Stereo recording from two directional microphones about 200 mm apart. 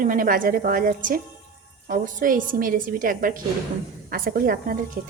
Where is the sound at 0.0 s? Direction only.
45° right (ahead or behind).